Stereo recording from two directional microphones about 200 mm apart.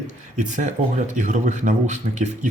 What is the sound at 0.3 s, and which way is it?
Speech, 35° right (ahead or behind).